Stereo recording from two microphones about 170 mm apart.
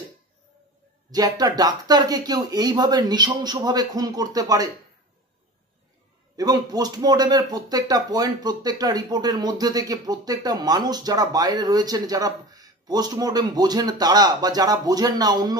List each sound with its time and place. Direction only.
1.1 s speech: 20° right (ahead or behind)
6.3 s speech: 25° right (ahead or behind)